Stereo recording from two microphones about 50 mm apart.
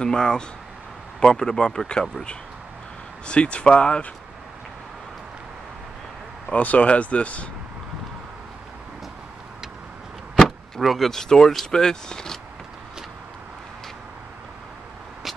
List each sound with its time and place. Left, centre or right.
0.0 s speech: centre
6.5 s speech: left
10.4 s speech: centre